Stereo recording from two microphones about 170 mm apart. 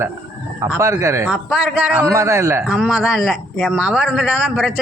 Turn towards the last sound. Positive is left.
turn(degrees=0)  # may be behind; listen again after turning